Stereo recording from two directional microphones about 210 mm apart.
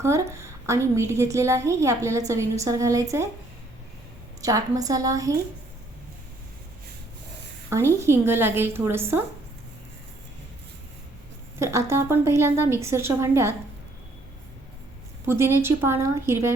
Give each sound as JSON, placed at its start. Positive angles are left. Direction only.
{"t": 0.0, "sound": "a woman's voice", "side_deg": -15}
{"t": 4.4, "sound": "a woman's voice", "side_deg": -15}
{"t": 7.7, "sound": "a woman's voice", "side_deg": -10}
{"t": 11.6, "sound": "a woman's voice", "side_deg": -10}
{"t": 15.3, "sound": "a woman's voice", "side_deg": -10}